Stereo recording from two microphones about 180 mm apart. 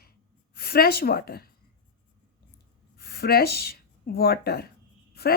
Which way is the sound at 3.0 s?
60° left (ahead or behind).